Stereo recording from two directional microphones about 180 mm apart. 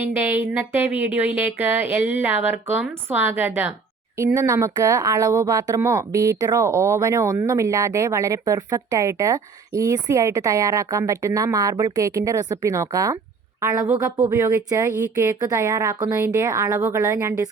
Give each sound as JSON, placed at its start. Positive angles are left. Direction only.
{"t": 0.0, "sound": "a woman's voice", "side_deg": -10}